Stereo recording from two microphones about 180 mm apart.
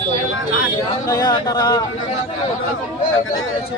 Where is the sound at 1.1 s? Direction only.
20° left (ahead or behind).